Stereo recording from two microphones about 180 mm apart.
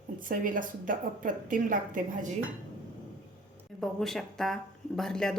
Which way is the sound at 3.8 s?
Centre (ahead or behind).